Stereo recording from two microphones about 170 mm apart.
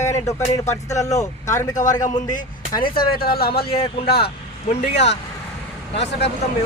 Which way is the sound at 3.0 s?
65° left (ahead or behind).